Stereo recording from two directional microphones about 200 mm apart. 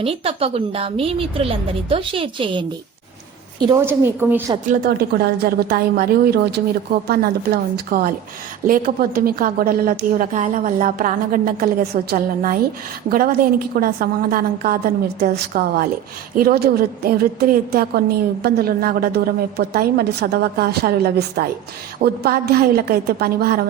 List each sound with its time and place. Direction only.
0.0 s a woman's voice: 30° right (ahead or behind)
3.7 s a woman's voice: 10° right (ahead or behind)
4.6 s a woman's voice: 40° right (ahead or behind)